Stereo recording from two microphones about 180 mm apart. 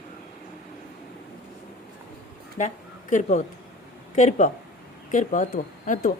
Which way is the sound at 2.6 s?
45° left (ahead or behind).